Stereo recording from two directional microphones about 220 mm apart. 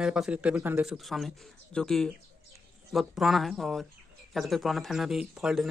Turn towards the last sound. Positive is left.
turn(degrees=0)  # may be behind; listen again after turning